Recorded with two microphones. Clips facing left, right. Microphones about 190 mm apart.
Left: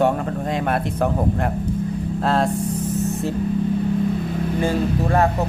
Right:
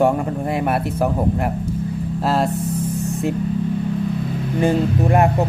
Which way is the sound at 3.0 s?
15° right (ahead or behind).